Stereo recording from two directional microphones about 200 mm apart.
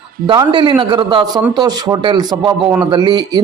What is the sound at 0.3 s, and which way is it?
A man's voice, 25° right (ahead or behind).